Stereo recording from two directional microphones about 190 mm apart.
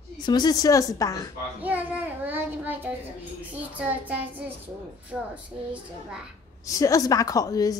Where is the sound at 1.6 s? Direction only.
10° right (ahead or behind).